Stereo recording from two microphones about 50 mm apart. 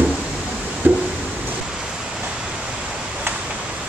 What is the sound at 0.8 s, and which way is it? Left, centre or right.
Music, right.